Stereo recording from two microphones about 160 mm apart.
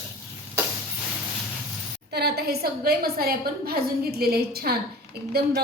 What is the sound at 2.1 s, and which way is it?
A woman's voice, 90° right.